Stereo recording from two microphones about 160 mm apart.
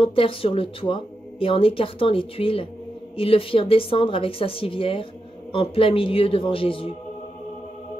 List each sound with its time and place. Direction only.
0.0 s speech: 35° left (ahead or behind)